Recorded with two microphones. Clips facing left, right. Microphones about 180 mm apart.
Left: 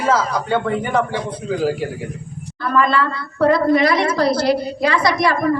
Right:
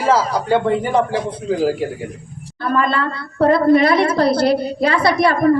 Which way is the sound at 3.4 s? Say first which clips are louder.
Right 2 dB; 30° right (ahead or behind).